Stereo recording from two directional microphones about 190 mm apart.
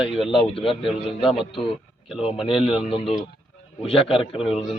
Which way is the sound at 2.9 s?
30° left (ahead or behind).